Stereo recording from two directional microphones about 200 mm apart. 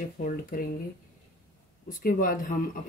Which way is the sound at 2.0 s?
45° left (ahead or behind).